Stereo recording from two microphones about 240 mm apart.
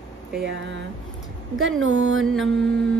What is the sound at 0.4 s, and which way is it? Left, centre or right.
Mantra, right.